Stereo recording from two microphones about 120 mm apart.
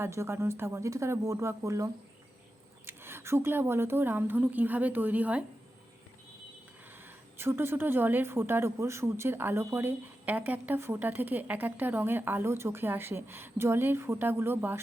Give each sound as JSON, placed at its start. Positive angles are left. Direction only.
{"t": 0.0, "sound": "a woman's voice", "side_deg": -20}
{"t": 7.3, "sound": "speech", "side_deg": -20}